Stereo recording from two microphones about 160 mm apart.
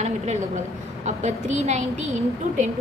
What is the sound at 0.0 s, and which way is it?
A woman's voice, 45° right (ahead or behind).